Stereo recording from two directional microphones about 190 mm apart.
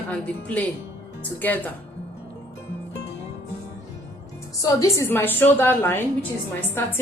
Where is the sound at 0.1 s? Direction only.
5° left (ahead or behind).